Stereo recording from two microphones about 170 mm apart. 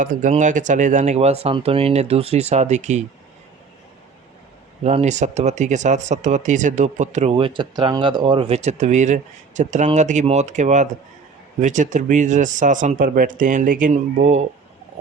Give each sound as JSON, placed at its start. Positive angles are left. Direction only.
{"t": 0.0, "sound": "speech", "side_deg": -50}
{"t": 4.8, "sound": "speech", "side_deg": -40}